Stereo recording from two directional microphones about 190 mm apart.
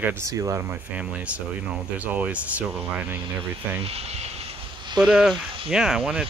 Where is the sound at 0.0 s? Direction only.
15° right (ahead or behind).